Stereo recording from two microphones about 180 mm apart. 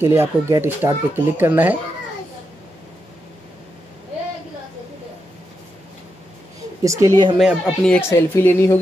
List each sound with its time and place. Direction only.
0.0 s speech: 15° right (ahead or behind)
6.8 s speech: 15° right (ahead or behind)
7.3 s speech: centre (ahead or behind)
8.1 s speech: 10° left (ahead or behind)